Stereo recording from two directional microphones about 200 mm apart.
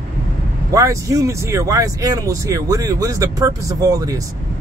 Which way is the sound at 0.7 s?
15° right (ahead or behind).